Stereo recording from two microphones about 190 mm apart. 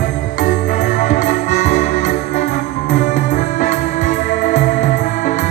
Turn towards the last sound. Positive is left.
turn(degrees=40)  # may be behind; listen again after turning